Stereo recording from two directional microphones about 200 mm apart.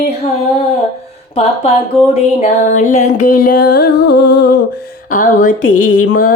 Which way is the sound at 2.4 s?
35° left (ahead or behind).